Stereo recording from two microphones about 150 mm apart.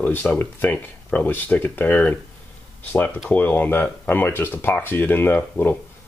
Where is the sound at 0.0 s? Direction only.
10° left (ahead or behind).